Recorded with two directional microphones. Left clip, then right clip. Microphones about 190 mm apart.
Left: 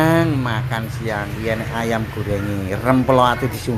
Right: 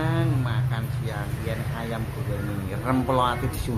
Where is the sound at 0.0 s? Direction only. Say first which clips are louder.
Left 11 dB; 45° left (ahead or behind).